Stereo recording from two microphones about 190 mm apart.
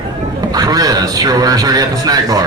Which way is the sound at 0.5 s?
20° right (ahead or behind).